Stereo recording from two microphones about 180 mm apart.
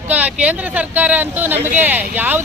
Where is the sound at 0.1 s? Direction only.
5° right (ahead or behind).